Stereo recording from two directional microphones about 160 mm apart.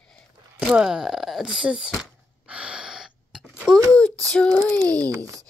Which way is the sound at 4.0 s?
5° left (ahead or behind).